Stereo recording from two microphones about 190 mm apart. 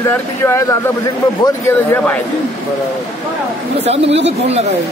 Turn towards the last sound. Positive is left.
turn(degrees=-35)  # may be behind; listen again after turning